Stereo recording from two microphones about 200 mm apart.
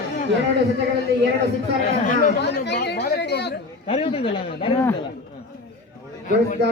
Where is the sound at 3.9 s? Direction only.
30° left (ahead or behind).